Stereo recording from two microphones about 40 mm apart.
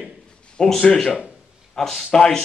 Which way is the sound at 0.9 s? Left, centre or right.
Centre.